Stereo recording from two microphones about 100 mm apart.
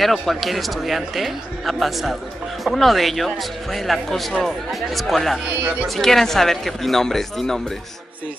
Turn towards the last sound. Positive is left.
turn(degrees=5)  # may be behind; listen again after turning